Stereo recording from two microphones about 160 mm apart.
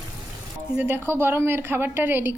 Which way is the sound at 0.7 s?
10° right (ahead or behind).